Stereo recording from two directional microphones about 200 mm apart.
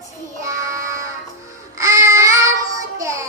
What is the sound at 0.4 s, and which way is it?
Child singing, 15° right (ahead or behind).